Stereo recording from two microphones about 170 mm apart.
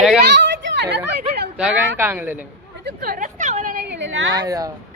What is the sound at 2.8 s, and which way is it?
Speech, 70° right (ahead or behind).